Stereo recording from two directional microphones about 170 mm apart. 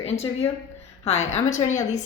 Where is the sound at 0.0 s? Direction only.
40° left (ahead or behind).